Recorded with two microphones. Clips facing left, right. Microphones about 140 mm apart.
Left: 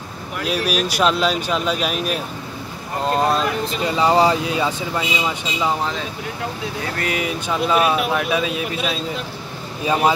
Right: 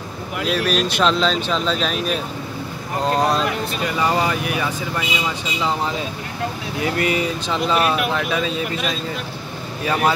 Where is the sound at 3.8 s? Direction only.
20° left (ahead or behind).